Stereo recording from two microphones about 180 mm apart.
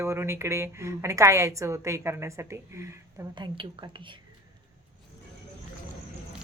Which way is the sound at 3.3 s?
25° right (ahead or behind).